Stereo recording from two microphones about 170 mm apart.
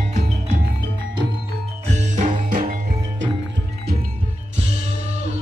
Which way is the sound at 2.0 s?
50° right (ahead or behind).